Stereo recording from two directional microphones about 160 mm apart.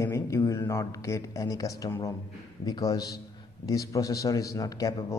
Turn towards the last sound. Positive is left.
turn(degrees=20)  # may be behind; listen again after turning